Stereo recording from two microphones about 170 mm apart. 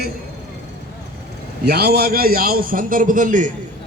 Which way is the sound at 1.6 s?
70° right (ahead or behind).